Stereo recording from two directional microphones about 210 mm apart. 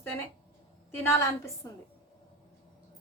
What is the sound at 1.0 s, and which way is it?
Speech, 15° left (ahead or behind).